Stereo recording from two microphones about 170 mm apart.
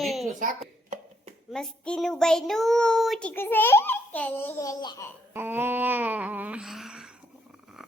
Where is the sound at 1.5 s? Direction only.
Centre (ahead or behind); by 5.0 s 20° left (ahead or behind).